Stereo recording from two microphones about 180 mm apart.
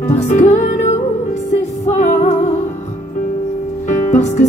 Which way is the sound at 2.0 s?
45° left (ahead or behind).